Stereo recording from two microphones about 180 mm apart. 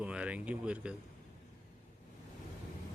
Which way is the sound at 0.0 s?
5° right (ahead or behind).